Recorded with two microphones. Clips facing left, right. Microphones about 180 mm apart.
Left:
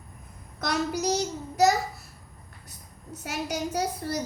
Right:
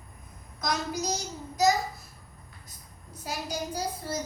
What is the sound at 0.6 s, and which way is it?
A child's voice, 65° left (ahead or behind).